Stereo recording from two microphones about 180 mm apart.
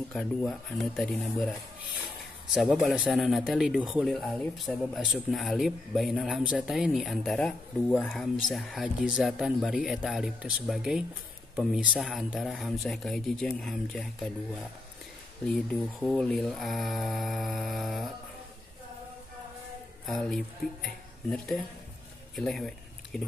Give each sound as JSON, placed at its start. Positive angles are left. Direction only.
{"t": 0.1, "sound": "a man's voice", "side_deg": 0}
{"t": 2.5, "sound": "a man's voice", "side_deg": 0}
{"t": 20.1, "sound": "a man's voice", "side_deg": 0}
{"t": 22.3, "sound": "a sound", "side_deg": 0}